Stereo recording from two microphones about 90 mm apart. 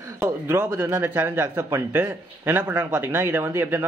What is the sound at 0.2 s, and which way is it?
Speech, 25° right (ahead or behind).